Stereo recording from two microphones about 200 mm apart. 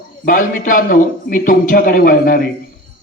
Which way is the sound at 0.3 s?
45° left (ahead or behind).